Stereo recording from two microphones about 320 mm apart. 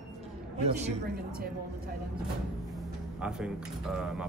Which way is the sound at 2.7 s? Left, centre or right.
Centre.